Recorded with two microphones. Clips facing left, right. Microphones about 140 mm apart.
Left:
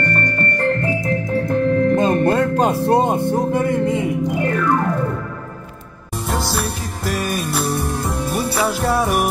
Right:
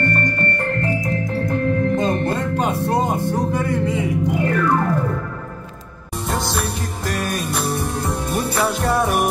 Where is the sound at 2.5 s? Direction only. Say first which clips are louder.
Left 4 dB; 35° left (ahead or behind).